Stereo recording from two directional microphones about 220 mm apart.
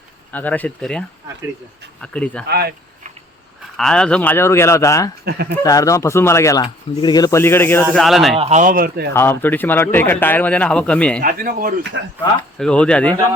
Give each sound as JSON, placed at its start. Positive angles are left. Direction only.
{"t": 0.3, "sound": "speech", "side_deg": 5}
{"t": 2.5, "sound": "speech", "side_deg": -45}
{"t": 3.8, "sound": "speech", "side_deg": 5}
{"t": 5.2, "sound": "speech", "side_deg": -45}
{"t": 5.6, "sound": "speech", "side_deg": 15}
{"t": 7.9, "sound": "speech", "side_deg": 0}
{"t": 8.4, "sound": "speech", "side_deg": -30}
{"t": 9.1, "sound": "speech", "side_deg": 10}
{"t": 11.2, "sound": "speech", "side_deg": -40}
{"t": 12.5, "sound": "speech", "side_deg": 5}